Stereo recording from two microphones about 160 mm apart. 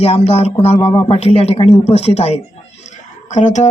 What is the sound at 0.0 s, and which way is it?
Speech, 40° left (ahead or behind).